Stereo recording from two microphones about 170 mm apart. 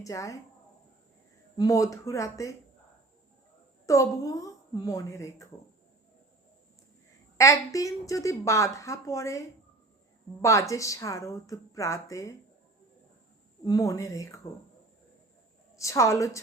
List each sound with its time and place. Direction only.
0.0 s a woman's voice: 20° left (ahead or behind)
1.5 s a woman's voice: 20° left (ahead or behind)
3.8 s a woman's voice: 20° left (ahead or behind)
7.3 s a woman's voice: 20° left (ahead or behind)
10.4 s a woman's voice: 20° left (ahead or behind)
13.7 s a woman's voice: 20° left (ahead or behind)
15.7 s a woman's voice: 20° left (ahead or behind)